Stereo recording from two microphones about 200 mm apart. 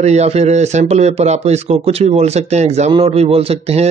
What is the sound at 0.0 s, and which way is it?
Speech, 35° right (ahead or behind).